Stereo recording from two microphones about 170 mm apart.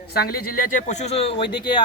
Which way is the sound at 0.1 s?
65° left (ahead or behind).